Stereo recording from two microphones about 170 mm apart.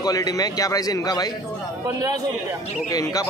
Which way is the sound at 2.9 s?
20° left (ahead or behind).